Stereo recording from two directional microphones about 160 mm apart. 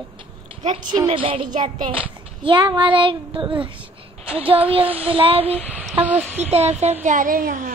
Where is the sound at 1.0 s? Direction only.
35° right (ahead or behind).